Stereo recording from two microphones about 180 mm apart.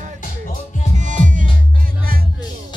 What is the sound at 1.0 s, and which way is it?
Music, 45° right (ahead or behind).